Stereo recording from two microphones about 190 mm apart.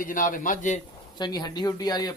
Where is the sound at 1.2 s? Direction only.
20° left (ahead or behind).